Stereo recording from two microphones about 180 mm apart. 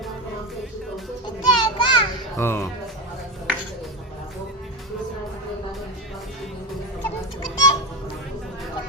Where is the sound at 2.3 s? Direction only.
15° left (ahead or behind).